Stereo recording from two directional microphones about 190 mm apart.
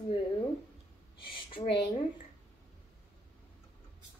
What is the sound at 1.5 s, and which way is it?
Speech, 25° left (ahead or behind).